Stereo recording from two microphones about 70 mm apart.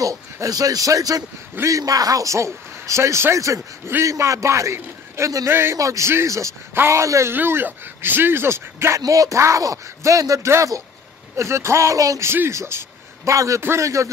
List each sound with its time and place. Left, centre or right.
0.0 s a man's voice: right
7.3 s speech: right
9.0 s a man's voice: right
12.3 s a man's voice: right
13.6 s speech: right
13.8 s a man's voice: right